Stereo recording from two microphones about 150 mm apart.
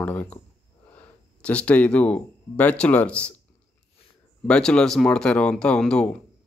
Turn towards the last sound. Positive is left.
turn(degrees=5)  # may be behind; listen again after turning